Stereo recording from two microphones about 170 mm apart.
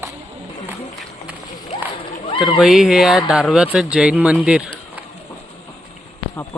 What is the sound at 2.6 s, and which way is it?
Speech, centre (ahead or behind).